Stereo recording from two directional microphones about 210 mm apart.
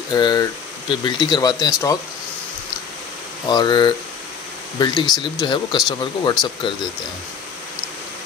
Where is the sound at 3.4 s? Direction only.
20° left (ahead or behind).